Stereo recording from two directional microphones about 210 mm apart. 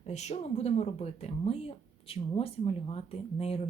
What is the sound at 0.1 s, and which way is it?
Speech, 30° left (ahead or behind).